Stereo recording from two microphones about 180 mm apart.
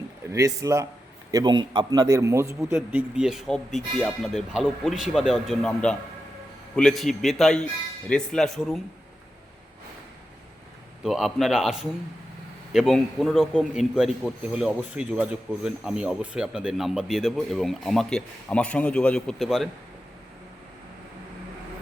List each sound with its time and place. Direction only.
0.3 s a man's voice: 15° right (ahead or behind)
2.6 s a man's voice: 5° right (ahead or behind)
11.0 s a man's voice: centre (ahead or behind)